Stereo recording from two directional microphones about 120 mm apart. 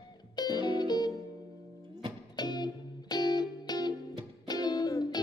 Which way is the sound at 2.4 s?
35° left (ahead or behind).